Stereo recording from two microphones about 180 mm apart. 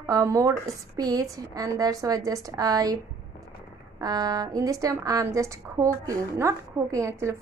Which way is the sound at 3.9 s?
20° right (ahead or behind).